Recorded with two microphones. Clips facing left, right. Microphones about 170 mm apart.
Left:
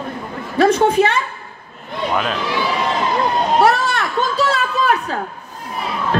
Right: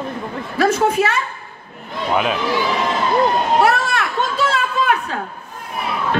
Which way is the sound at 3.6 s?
35° left (ahead or behind).